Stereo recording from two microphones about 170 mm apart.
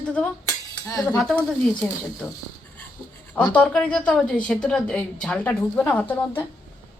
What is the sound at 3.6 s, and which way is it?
A woman's voice, 5° left (ahead or behind).